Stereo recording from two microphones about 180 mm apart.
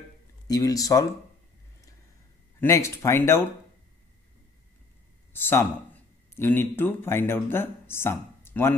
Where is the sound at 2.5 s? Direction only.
15° left (ahead or behind).